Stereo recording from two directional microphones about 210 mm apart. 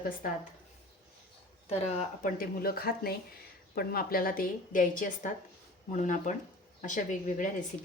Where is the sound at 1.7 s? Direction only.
35° left (ahead or behind).